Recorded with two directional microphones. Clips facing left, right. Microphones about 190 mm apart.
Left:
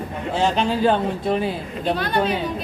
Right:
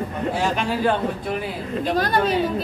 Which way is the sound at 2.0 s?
40° right (ahead or behind).